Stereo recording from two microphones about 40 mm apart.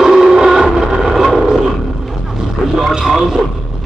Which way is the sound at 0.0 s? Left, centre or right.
Centre.